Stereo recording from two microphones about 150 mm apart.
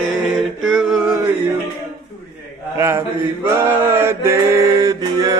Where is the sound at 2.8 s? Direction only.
20° right (ahead or behind).